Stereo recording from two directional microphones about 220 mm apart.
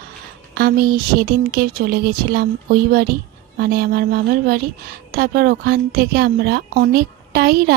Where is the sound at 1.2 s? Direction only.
45° right (ahead or behind).